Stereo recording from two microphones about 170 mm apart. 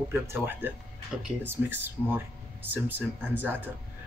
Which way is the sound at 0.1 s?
10° right (ahead or behind).